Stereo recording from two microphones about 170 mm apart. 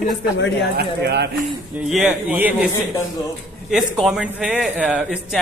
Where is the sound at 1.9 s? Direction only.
5° right (ahead or behind).